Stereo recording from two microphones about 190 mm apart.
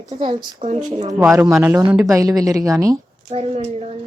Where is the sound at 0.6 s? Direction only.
45° right (ahead or behind).